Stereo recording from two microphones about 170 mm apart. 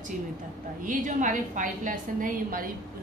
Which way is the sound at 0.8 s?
50° right (ahead or behind).